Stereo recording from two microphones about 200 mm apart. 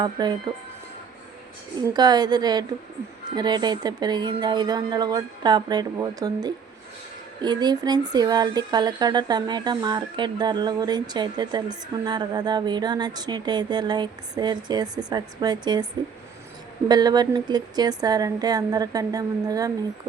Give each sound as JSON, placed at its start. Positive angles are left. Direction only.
{"t": 0.0, "sound": "speech", "side_deg": -20}
{"t": 1.9, "sound": "speech", "side_deg": -20}
{"t": 16.9, "sound": "speech", "side_deg": -20}